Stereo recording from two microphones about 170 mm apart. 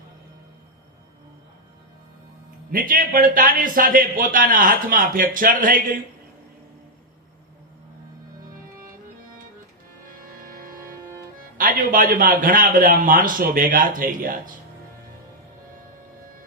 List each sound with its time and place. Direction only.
2.7 s a man's voice: 55° right (ahead or behind)
10.1 s music: 55° right (ahead or behind)
11.5 s a man's voice: 55° right (ahead or behind)